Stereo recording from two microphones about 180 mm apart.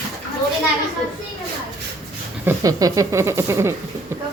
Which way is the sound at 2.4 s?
20° right (ahead or behind).